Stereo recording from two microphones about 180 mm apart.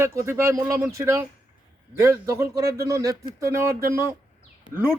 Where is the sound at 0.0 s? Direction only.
15° right (ahead or behind).